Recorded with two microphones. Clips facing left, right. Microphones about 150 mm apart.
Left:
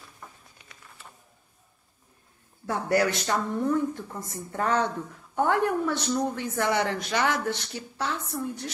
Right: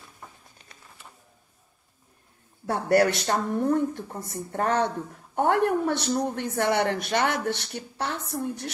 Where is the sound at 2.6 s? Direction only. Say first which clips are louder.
Right 3 dB; 55° right (ahead or behind).